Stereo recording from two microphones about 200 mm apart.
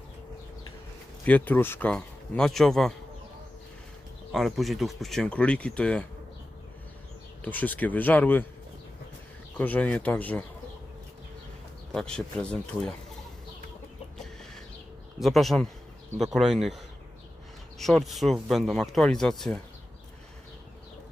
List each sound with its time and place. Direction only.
1.2 s speech: 10° left (ahead or behind)
4.3 s speech: centre (ahead or behind)
7.4 s speech: 10° left (ahead or behind)
9.6 s speech: 10° left (ahead or behind)
11.9 s speech: 5° left (ahead or behind)
15.2 s speech: centre (ahead or behind)